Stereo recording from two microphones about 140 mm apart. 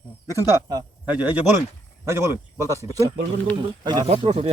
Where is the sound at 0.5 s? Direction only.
25° right (ahead or behind).